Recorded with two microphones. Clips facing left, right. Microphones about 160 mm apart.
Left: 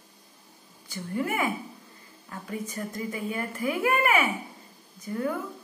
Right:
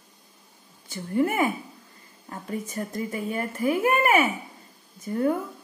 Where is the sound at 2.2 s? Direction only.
35° right (ahead or behind).